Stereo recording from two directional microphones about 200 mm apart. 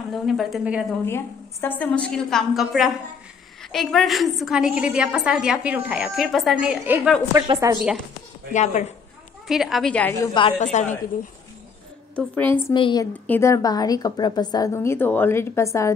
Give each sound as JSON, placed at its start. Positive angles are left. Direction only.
{"t": 0.1, "sound": "a woman's voice", "side_deg": 0}
{"t": 1.0, "sound": "a woman's voice", "side_deg": 10}
{"t": 7.3, "sound": "a woman's voice", "side_deg": -20}
{"t": 9.5, "sound": "a woman's voice", "side_deg": 0}
{"t": 10.1, "sound": "a woman's voice", "side_deg": 20}
{"t": 10.6, "sound": "a woman's voice", "side_deg": 35}
{"t": 12.6, "sound": "a woman's voice", "side_deg": 20}